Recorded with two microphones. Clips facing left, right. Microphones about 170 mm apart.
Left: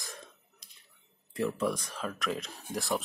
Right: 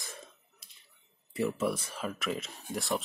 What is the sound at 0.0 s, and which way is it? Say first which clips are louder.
Finger snapping: even; centre (ahead or behind).